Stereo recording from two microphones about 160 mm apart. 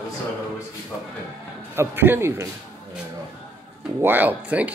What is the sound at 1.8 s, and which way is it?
Speech, 15° right (ahead or behind).